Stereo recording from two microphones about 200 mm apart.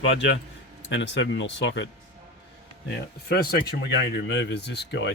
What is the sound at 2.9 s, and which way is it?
Speech, 50° left (ahead or behind).